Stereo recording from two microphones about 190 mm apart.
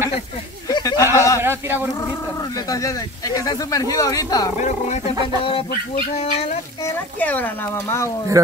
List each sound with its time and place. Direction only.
0.7 s a sound: 20° left (ahead or behind)
1.4 s a sound: 10° right (ahead or behind)
2.7 s speech: 20° left (ahead or behind)
4.6 s speech: 40° left (ahead or behind)
5.4 s speech: 30° left (ahead or behind)
5.7 s speech: 45° left (ahead or behind)
7.2 s speech: 10° left (ahead or behind)